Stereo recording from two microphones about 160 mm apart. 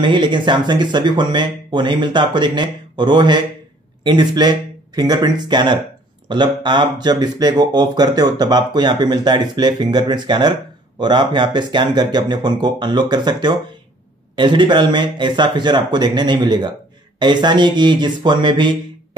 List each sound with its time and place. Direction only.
0.0 s speech: 30° right (ahead or behind)